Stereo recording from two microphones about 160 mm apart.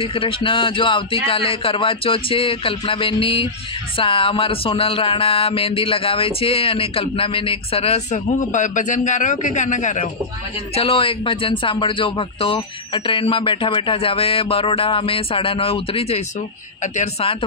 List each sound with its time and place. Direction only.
0.0 s speech: 35° left (ahead or behind); by 10.0 s 50° left (ahead or behind)
10.7 s speech: 35° left (ahead or behind)